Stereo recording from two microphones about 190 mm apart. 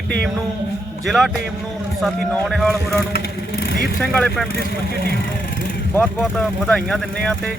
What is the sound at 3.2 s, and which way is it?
Vehicle, 60° left (ahead or behind).